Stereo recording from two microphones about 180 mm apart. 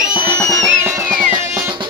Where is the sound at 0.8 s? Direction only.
15° right (ahead or behind).